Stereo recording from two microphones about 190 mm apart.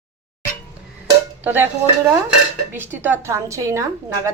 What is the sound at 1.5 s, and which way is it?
Speech, 10° right (ahead or behind).